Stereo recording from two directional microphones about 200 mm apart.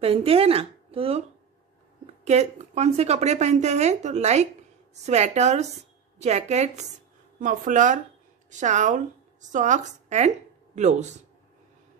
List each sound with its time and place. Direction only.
0.0 s speech: 30° right (ahead or behind)
2.2 s a woman's voice: 35° right (ahead or behind)